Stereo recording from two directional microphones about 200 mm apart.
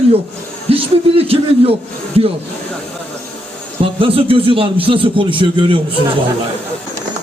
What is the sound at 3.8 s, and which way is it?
A man's voice, 25° right (ahead or behind).